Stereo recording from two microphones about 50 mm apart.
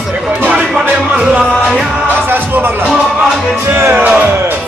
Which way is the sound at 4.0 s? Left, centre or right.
Right.